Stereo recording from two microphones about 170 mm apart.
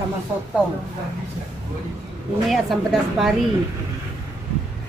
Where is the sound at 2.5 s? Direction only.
Centre (ahead or behind).